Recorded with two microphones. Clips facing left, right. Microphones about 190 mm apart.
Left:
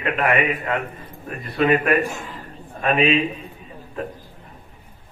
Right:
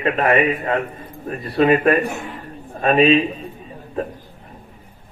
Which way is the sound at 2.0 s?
65° right (ahead or behind).